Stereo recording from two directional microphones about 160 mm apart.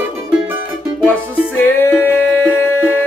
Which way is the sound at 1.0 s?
10° left (ahead or behind).